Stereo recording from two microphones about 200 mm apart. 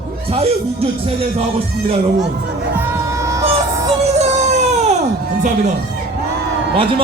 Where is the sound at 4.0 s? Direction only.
35° right (ahead or behind).